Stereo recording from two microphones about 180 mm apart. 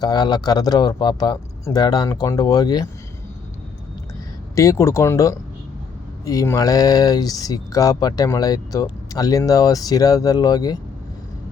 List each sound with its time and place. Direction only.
0.0 s speech: 20° left (ahead or behind)
4.5 s speech: 15° left (ahead or behind)